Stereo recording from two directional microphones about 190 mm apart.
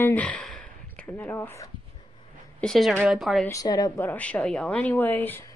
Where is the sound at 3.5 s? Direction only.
20° left (ahead or behind).